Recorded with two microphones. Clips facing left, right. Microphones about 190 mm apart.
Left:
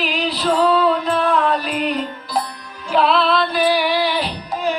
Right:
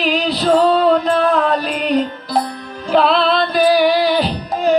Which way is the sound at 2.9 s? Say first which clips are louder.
Right 2 dB; 40° right (ahead or behind).